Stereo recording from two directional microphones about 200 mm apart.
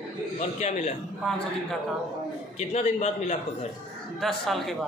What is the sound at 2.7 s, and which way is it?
Speech, 35° left (ahead or behind).